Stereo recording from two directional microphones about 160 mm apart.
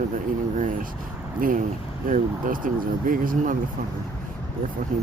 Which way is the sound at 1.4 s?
60° right (ahead or behind).